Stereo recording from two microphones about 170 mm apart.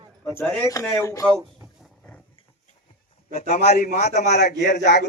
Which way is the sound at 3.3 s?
40° left (ahead or behind).